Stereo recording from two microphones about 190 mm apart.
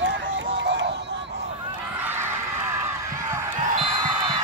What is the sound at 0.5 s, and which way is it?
Music, 70° right (ahead or behind).